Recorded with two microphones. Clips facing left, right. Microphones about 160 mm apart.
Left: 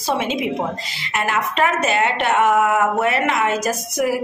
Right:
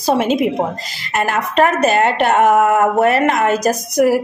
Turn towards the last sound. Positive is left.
turn(degrees=-40)  # may be behind; listen again after turning